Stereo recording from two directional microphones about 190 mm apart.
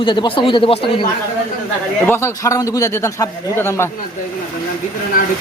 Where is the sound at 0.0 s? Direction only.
25° left (ahead or behind).